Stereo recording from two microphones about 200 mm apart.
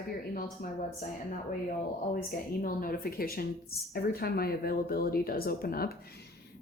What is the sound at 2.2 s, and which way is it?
A woman's voice, 45° left (ahead or behind).